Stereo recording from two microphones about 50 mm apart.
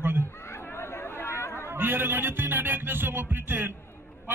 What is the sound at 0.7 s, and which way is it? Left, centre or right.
Chatter, left.